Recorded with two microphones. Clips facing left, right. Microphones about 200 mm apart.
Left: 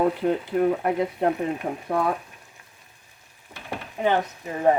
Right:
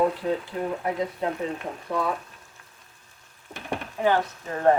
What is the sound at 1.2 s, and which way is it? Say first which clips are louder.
Speech: left 7 dB; 60° left (ahead or behind).